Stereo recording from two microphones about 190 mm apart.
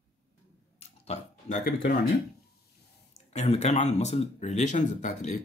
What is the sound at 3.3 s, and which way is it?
Speech, 35° left (ahead or behind).